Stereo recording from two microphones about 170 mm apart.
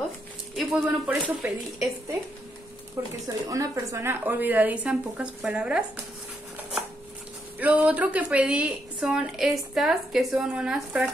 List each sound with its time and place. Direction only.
0.6 s a woman's voice: 5° right (ahead or behind)
3.0 s a woman's voice: 15° right (ahead or behind)
7.5 s a woman's voice: 10° right (ahead or behind)